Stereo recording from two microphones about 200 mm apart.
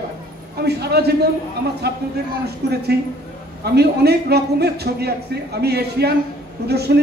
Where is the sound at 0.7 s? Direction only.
55° right (ahead or behind).